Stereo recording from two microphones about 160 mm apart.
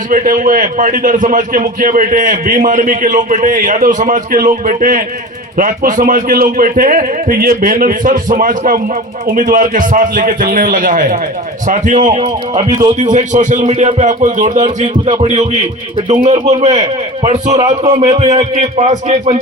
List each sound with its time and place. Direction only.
0.1 s a man's voice: 55° right (ahead or behind)